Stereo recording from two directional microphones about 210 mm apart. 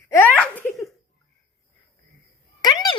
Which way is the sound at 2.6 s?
20° left (ahead or behind).